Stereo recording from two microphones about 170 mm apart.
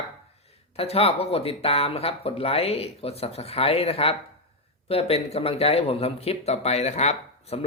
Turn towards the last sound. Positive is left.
turn(degrees=40)  # may be behind; listen again after turning